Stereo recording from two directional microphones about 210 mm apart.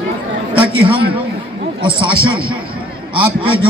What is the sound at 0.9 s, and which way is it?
A man's voice, 25° right (ahead or behind).